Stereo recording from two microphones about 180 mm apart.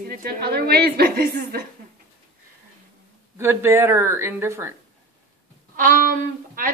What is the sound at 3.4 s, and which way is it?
Speech, 15° right (ahead or behind).